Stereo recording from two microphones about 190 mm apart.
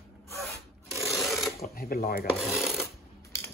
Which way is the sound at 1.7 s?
50° left (ahead or behind).